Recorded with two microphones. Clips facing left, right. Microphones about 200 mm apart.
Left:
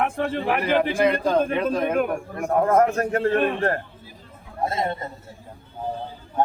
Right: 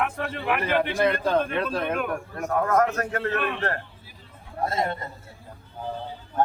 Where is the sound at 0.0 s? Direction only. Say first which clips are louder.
Left 4 dB; 35° left (ahead or behind).